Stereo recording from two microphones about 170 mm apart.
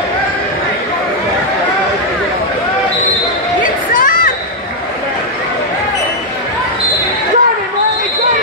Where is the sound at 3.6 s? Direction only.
50° left (ahead or behind).